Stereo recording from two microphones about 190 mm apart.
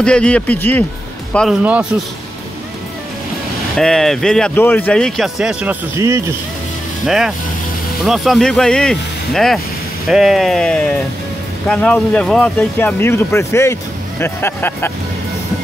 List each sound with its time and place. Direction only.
0.0 s speech: 5° left (ahead or behind)
3.7 s speech: centre (ahead or behind)
5.9 s speech: 15° right (ahead or behind)
7.1 s speech: centre (ahead or behind)